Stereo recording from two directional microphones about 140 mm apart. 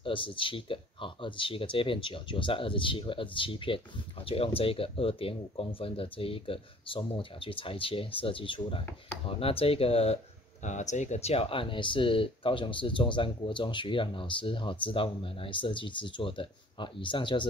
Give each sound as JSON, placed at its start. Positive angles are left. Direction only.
{"t": 0.0, "sound": "speech", "side_deg": 40}
{"t": 10.6, "sound": "speech", "side_deg": 60}